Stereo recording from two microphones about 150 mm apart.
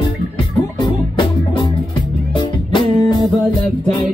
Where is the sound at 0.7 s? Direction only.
30° left (ahead or behind).